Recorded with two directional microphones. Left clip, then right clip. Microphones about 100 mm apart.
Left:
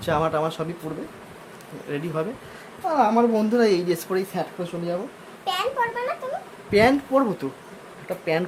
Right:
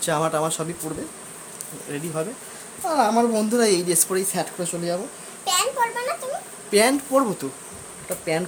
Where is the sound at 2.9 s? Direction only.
15° right (ahead or behind).